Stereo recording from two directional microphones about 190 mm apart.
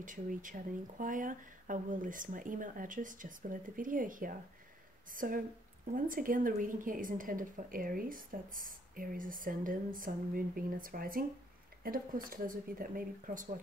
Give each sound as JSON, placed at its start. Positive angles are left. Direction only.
{"t": 0.0, "sound": "a woman's voice", "side_deg": -45}